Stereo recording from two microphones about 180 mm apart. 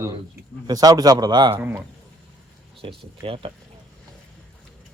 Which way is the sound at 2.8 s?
30° right (ahead or behind).